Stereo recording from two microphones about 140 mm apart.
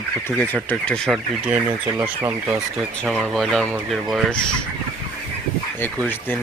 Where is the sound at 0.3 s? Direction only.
15° left (ahead or behind).